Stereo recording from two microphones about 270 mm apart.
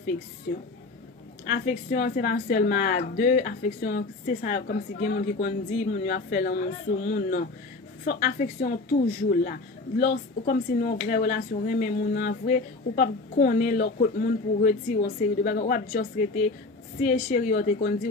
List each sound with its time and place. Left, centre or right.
0.5 s a woman's voice: left